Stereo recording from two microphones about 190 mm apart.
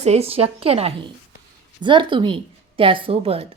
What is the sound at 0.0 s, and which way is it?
A woman's voice, 35° right (ahead or behind).